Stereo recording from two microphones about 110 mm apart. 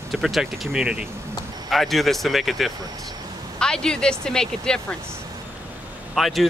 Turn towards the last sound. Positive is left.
turn(degrees=0)  # may be behind; listen again after turning